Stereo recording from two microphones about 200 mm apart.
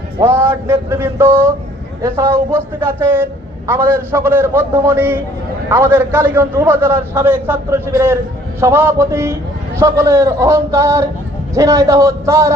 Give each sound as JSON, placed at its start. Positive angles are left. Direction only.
{"t": 0.2, "sound": "a man's voice", "side_deg": -10}